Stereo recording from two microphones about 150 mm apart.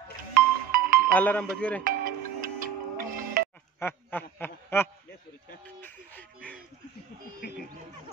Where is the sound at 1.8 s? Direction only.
70° right (ahead or behind).